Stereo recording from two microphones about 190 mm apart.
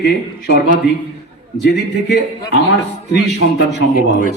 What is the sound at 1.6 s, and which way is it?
Speech, 65° left (ahead or behind).